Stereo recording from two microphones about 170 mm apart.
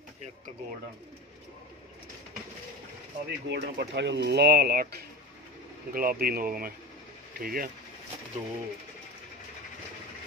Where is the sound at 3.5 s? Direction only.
90° right; by 7.7 s 60° right (ahead or behind).